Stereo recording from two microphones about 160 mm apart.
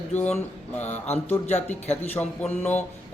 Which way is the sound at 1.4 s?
45° left (ahead or behind).